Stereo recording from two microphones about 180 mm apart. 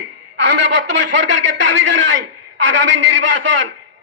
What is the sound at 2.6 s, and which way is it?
Speech, 90° right.